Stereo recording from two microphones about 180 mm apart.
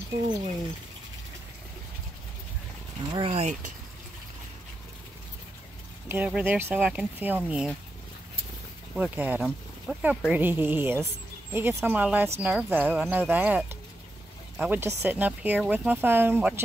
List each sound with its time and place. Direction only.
3.1 s speech: 30° right (ahead or behind)
6.0 s speech: 10° right (ahead or behind)
8.9 s speech: 10° right (ahead or behind)